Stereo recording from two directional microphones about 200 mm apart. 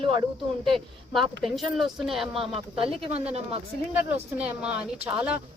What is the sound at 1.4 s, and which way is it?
Speech, centre (ahead or behind).